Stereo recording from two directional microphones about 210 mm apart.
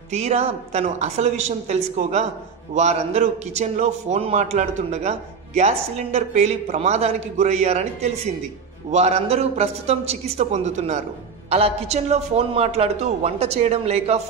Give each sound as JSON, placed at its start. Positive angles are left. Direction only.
{"t": 0.1, "sound": "a man's voice", "side_deg": -30}